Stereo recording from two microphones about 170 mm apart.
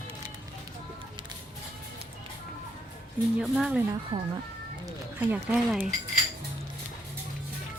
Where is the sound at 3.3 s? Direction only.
5° right (ahead or behind).